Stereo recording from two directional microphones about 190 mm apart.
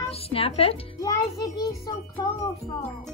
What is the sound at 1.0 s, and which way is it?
Speech, 20° left (ahead or behind).